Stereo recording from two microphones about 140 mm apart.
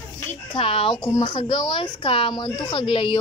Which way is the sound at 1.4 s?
35° left (ahead or behind).